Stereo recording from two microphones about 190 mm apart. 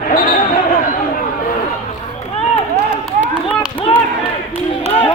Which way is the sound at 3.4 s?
30° left (ahead or behind).